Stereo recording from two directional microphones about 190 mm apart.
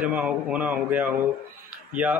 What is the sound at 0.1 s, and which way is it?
A man's voice, 5° right (ahead or behind).